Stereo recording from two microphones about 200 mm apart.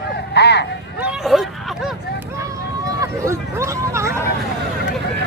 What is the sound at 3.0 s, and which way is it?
Speech, 15° right (ahead or behind).